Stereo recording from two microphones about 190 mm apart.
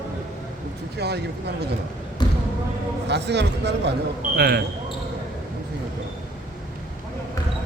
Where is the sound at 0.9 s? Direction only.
60° right (ahead or behind).